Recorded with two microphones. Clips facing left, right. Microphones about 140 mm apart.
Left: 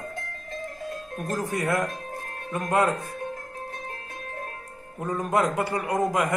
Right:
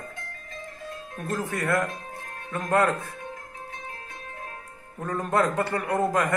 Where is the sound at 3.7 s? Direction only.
50° left (ahead or behind).